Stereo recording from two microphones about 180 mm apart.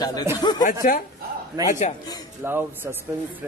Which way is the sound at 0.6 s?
50° left (ahead or behind).